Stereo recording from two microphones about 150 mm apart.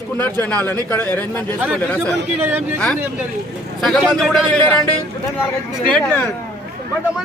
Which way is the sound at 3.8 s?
Centre (ahead or behind).